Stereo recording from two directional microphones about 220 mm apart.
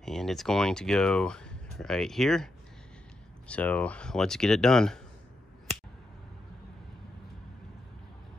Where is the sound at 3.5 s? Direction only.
5° left (ahead or behind).